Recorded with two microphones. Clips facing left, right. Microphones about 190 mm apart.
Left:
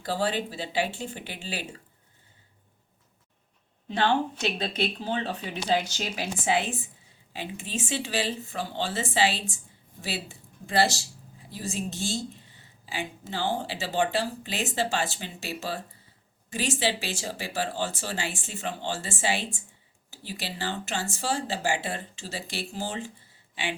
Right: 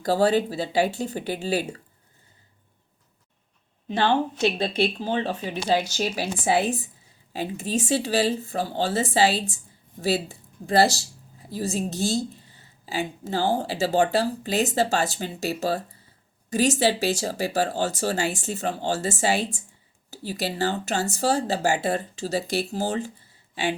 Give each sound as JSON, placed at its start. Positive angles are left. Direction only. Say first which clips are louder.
{"t": 0.0, "sound": "speech", "louder": "right 8 dB", "side_deg": -40}
{"t": 3.8, "sound": "speech", "louder": "right 3 dB", "side_deg": -25}